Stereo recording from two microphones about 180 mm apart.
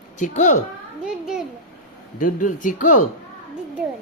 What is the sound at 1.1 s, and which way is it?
Speech, 5° right (ahead or behind).